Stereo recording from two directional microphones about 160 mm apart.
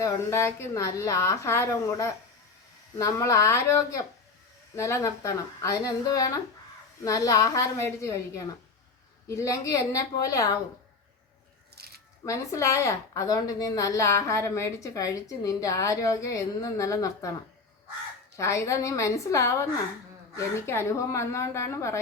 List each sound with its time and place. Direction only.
0.0 s a woman's voice: 15° left (ahead or behind)
11.8 s a sound: 80° right
12.2 s a woman's voice: 20° left (ahead or behind)
18.3 s a woman's voice: 15° left (ahead or behind)